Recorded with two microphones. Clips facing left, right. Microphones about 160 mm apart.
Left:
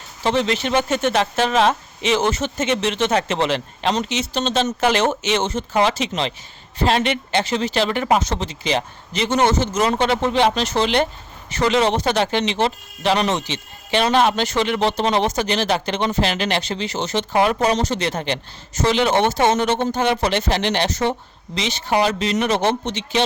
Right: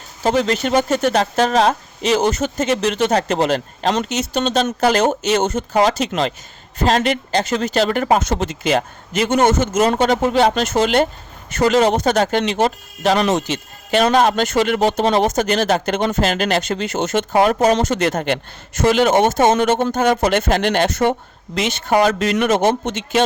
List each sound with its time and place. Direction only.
0.2 s speech: 40° right (ahead or behind)